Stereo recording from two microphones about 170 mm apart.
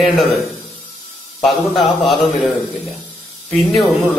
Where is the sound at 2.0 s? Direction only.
Centre (ahead or behind).